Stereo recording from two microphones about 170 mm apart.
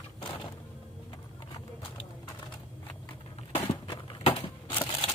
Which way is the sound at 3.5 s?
30° left (ahead or behind).